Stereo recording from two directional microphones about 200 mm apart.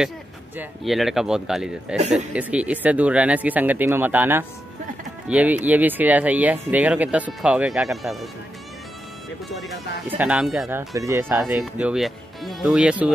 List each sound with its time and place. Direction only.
0.6 s speech: centre (ahead or behind)
2.0 s speech: 35° right (ahead or behind)
2.3 s speech: 5° right (ahead or behind)
9.5 s speech: centre (ahead or behind)
11.0 s speech: 10° right (ahead or behind)